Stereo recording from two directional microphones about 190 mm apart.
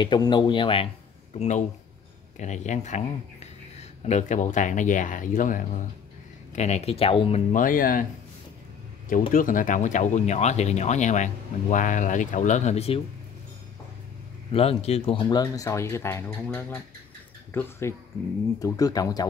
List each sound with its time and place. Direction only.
0.0 s speech: 25° left (ahead or behind)
7.5 s speech: 45° left (ahead or behind)
9.3 s speech: 45° left (ahead or behind)
14.5 s speech: 30° left (ahead or behind)